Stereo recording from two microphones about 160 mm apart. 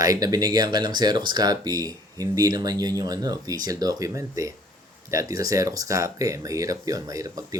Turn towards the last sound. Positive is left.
turn(degrees=-20)  # may be behind; listen again after turning